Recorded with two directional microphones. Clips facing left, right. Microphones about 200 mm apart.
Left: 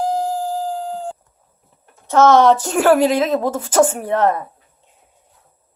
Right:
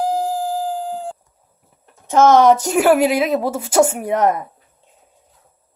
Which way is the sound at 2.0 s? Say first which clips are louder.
Even; 15° right (ahead or behind).